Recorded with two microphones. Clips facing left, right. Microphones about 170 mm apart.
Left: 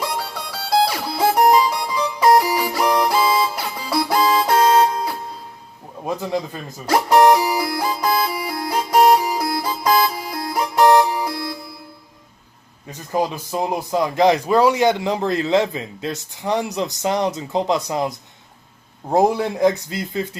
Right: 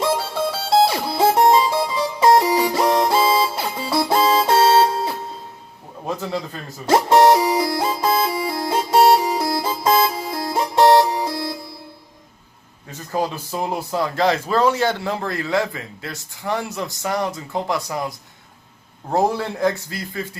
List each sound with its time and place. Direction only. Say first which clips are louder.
0.0 s music: right 6 dB; 25° right (ahead or behind)
6.1 s speech: left 2 dB; 15° left (ahead or behind)
6.8 s music: even; 25° right (ahead or behind)
12.9 s speech: left 2 dB; 15° left (ahead or behind)
19.1 s speech: left 3 dB; 15° left (ahead or behind)